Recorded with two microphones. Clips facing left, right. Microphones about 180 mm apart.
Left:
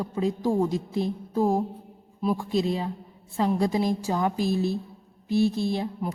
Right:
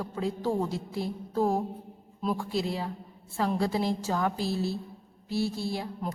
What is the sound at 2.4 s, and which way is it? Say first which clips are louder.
Speech: left 5 dB; 20° left (ahead or behind).